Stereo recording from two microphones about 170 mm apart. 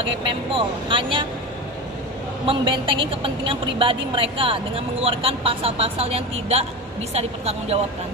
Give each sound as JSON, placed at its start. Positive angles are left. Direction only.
{"t": 0.3, "sound": "a woman's voice", "side_deg": -30}
{"t": 2.4, "sound": "a woman's voice", "side_deg": -30}